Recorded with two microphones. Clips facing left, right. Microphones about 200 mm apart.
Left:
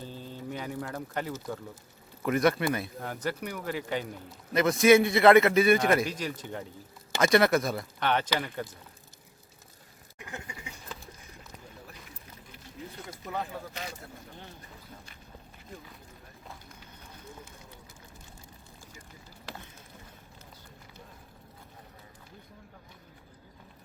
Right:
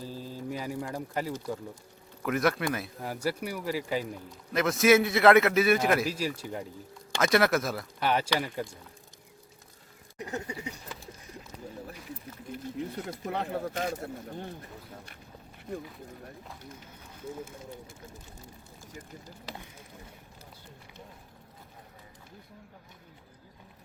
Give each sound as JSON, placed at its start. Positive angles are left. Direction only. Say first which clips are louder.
{"t": 0.0, "sound": "mantra", "louder": "right 2 dB", "side_deg": -5}
{"t": 2.2, "sound": "speech", "louder": "left 2 dB", "side_deg": 0}
{"t": 10.2, "sound": "a sound", "louder": "right 7 dB", "side_deg": -40}
{"t": 13.1, "sound": "speech", "louder": "right 3 dB", "side_deg": -60}
{"t": 13.6, "sound": "speech", "louder": "right 9 dB", "side_deg": -45}
{"t": 15.7, "sound": "speech", "louder": "right 10 dB", "side_deg": -65}